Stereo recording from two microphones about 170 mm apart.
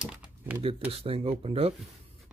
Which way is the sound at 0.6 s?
35° right (ahead or behind).